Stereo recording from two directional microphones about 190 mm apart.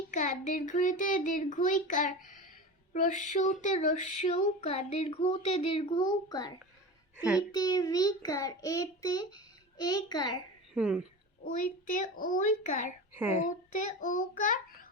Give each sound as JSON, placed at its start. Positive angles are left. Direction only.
{"t": 0.1, "sound": "female singing", "side_deg": 40}
{"t": 2.9, "sound": "a sound", "side_deg": 40}
{"t": 3.2, "sound": "female singing", "side_deg": 40}
{"t": 7.5, "sound": "a child's voice", "side_deg": 20}
{"t": 10.8, "sound": "speech", "side_deg": -5}
{"t": 11.4, "sound": "a child's voice", "side_deg": 45}
{"t": 13.1, "sound": "speech", "side_deg": -10}
{"t": 14.0, "sound": "a child's voice", "side_deg": 45}